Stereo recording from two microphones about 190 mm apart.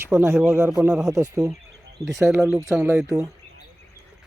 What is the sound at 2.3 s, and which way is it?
Speech, 5° right (ahead or behind).